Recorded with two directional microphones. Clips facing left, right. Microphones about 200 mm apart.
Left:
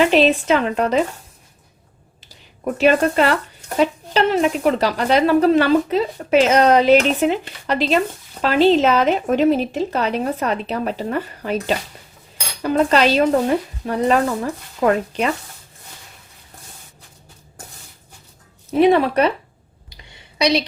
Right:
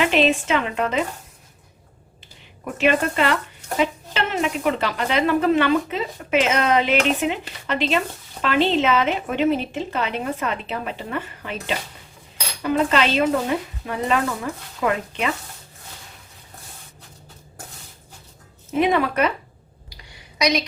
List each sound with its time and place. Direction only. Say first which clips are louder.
0.0 s speech: left 4 dB; 35° left (ahead or behind)
2.7 s speech: left 4 dB; 40° left (ahead or behind)
18.7 s speech: left 6 dB; 35° left (ahead or behind)
19.9 s a sound: even; 25° left (ahead or behind)